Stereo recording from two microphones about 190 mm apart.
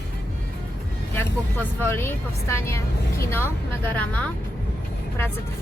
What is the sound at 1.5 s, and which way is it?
A woman's voice, 10° left (ahead or behind).